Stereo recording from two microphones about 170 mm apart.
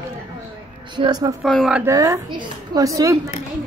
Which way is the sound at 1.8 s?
20° right (ahead or behind).